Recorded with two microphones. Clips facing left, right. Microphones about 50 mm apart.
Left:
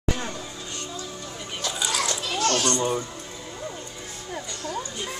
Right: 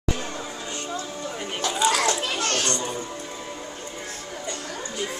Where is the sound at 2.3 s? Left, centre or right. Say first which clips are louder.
Left 2 dB; right.